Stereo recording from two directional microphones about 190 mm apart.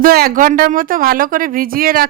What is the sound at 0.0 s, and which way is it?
Speech, 50° right (ahead or behind).